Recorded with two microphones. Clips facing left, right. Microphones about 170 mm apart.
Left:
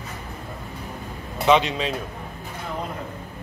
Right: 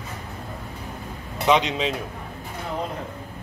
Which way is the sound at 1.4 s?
15° right (ahead or behind).